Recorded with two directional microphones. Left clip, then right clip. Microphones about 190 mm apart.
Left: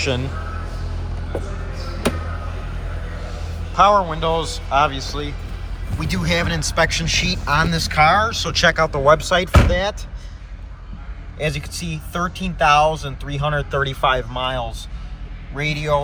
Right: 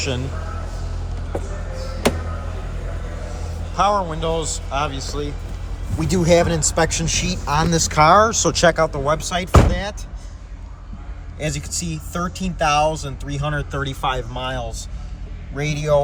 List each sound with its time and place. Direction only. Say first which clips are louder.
0.0 s speech: left 3 dB; 15° right (ahead or behind)
3.2 s speech: even; 10° right (ahead or behind)
6.0 s speech: right 6 dB; 40° right (ahead or behind); by 7.7 s 15° right (ahead or behind)
7.7 s speech: right 4 dB; 30° right (ahead or behind); by 9.9 s centre (ahead or behind)
11.3 s speech: left 2 dB; centre (ahead or behind)